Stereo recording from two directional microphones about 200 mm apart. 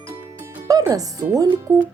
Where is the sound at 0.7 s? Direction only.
15° right (ahead or behind).